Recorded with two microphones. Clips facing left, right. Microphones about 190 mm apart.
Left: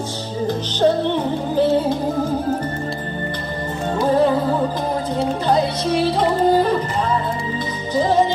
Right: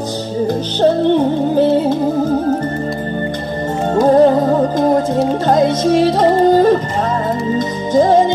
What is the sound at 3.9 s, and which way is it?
Music, 45° right (ahead or behind).